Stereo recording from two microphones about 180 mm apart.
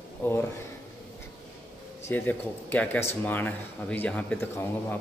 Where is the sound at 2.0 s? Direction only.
10° left (ahead or behind).